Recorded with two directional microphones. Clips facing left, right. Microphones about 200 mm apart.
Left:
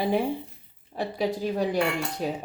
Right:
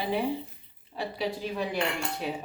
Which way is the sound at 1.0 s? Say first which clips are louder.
Left 4 dB; 45° left (ahead or behind).